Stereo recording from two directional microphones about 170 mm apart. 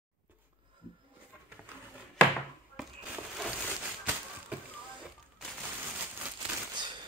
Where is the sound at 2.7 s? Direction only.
5° right (ahead or behind).